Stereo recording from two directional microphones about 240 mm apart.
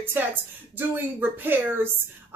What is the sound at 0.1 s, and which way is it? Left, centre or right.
Speech, centre.